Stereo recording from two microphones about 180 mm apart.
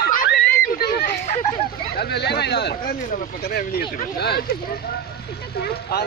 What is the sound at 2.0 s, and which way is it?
Speech, 65° left (ahead or behind).